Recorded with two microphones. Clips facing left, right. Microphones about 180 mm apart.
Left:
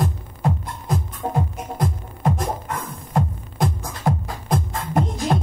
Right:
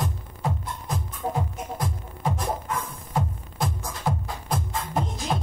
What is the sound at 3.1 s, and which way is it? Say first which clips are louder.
Music: left 5 dB; 50° left (ahead or behind).